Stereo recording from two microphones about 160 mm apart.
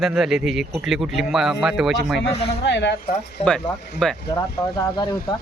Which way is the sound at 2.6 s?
90° left.